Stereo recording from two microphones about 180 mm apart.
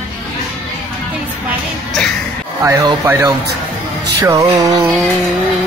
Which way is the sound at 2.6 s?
15° right (ahead or behind).